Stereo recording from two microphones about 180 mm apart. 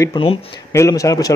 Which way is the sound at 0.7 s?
15° left (ahead or behind).